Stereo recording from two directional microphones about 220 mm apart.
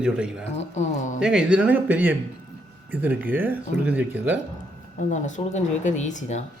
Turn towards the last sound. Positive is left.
turn(degrees=35)  # may be behind; listen again after turning